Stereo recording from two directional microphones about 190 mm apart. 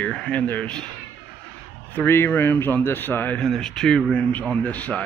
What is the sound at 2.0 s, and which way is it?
A man's voice, 10° left (ahead or behind).